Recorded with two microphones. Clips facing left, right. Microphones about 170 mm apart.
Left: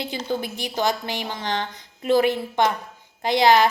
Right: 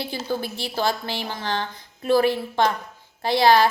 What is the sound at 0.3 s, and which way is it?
A woman's voice, 20° left (ahead or behind).